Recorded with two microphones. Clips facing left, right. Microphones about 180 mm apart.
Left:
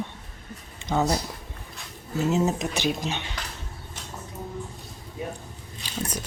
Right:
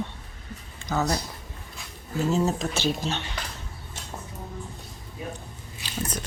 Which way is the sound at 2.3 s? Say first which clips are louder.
Even; 15° left (ahead or behind).